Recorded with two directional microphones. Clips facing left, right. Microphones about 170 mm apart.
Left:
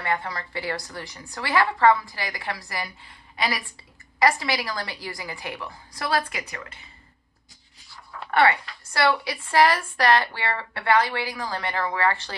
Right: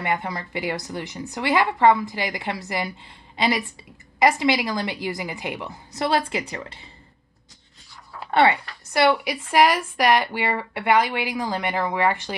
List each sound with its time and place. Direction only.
0.0 s a woman's voice: 15° right (ahead or behind)
8.3 s a woman's voice: 20° right (ahead or behind)